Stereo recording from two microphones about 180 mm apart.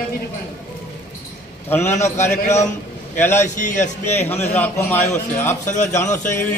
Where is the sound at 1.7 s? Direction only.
15° left (ahead or behind).